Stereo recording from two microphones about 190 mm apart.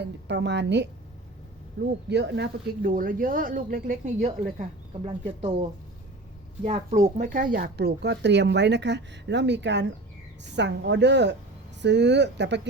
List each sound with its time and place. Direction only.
0.0 s speech: 65° right (ahead or behind)
2.0 s speech: 65° right (ahead or behind); by 5.6 s 35° right (ahead or behind)
6.7 s speech: 35° right (ahead or behind)
7.2 s speech: 50° right (ahead or behind); by 12.6 s 65° right (ahead or behind)